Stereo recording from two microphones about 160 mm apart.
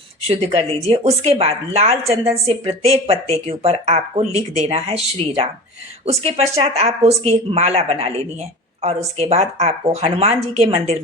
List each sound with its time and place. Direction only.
0.3 s speech: 40° right (ahead or behind)